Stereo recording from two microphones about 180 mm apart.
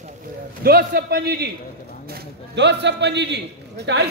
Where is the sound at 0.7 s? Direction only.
60° right (ahead or behind).